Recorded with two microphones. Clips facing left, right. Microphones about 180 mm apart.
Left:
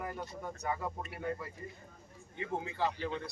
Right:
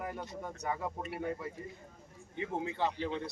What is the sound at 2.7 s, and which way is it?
Speech, 20° right (ahead or behind).